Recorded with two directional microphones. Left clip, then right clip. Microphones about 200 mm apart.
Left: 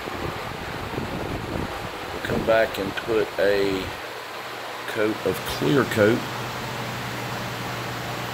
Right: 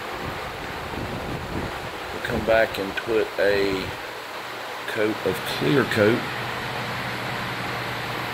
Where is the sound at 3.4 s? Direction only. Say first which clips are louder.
Even; 5° left (ahead or behind).